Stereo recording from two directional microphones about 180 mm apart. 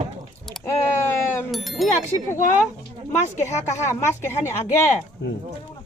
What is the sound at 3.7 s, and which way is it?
Speech, 15° left (ahead or behind).